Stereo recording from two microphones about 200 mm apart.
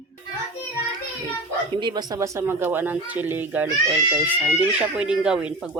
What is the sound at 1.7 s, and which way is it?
Speech, 20° right (ahead or behind).